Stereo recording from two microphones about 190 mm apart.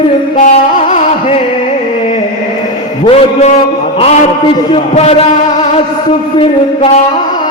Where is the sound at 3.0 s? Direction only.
35° left (ahead or behind).